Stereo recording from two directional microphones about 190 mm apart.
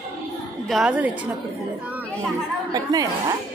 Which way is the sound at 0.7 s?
5° right (ahead or behind).